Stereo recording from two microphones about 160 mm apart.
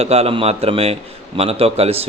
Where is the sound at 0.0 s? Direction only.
40° right (ahead or behind).